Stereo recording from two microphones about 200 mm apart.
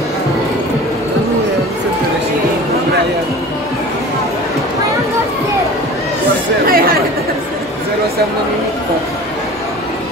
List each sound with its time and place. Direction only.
6.6 s chatter: 45° right (ahead or behind)